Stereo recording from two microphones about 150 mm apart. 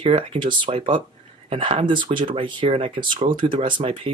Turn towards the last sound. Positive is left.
turn(degrees=-35)  # may be behind; listen again after turning